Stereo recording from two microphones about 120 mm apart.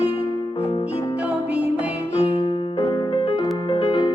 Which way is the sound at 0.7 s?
50° left (ahead or behind).